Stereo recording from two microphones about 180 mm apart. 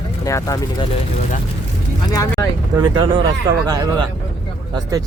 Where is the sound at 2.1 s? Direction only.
20° left (ahead or behind).